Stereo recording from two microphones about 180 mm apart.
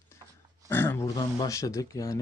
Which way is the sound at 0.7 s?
15° left (ahead or behind).